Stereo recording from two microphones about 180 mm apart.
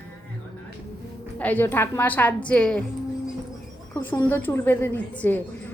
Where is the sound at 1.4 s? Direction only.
10° left (ahead or behind).